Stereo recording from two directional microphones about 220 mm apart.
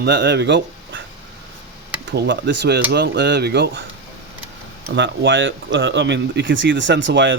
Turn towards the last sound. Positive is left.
turn(degrees=-55)  # may be behind; listen again after turning